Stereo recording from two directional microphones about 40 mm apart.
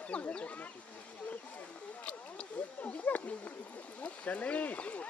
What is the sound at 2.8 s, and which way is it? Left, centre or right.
Speech, left.